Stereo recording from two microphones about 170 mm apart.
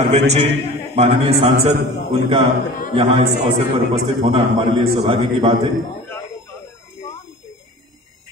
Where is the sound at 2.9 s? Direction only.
35° right (ahead or behind).